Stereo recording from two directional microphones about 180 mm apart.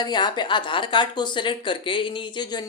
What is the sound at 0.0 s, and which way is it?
A woman's voice, 25° left (ahead or behind).